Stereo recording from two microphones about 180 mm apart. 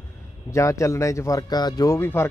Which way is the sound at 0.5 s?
15° left (ahead or behind).